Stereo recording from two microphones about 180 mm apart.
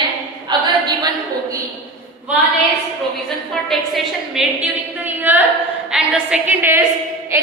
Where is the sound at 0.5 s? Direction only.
25° right (ahead or behind).